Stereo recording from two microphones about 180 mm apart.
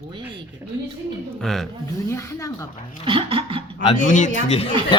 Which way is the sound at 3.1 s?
30° right (ahead or behind).